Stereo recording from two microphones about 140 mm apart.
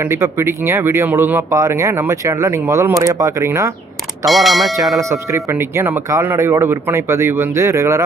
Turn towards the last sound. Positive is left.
turn(degrees=-20)  # may be behind; listen again after turning